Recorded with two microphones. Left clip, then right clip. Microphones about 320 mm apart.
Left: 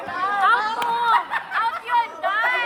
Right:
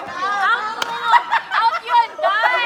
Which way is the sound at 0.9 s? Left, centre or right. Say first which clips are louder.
Right 6 dB; right.